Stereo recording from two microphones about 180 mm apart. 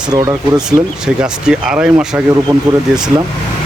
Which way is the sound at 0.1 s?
20° right (ahead or behind).